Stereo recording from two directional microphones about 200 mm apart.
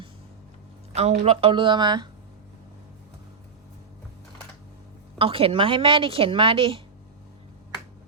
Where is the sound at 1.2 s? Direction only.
30° right (ahead or behind).